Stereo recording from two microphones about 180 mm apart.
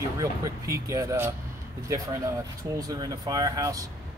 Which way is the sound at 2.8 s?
20° right (ahead or behind).